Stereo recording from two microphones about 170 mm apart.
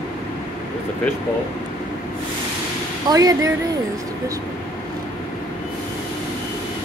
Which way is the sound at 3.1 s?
20° right (ahead or behind).